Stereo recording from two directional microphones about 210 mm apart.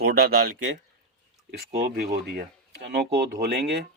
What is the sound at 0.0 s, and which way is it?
Speech, 50° right (ahead or behind).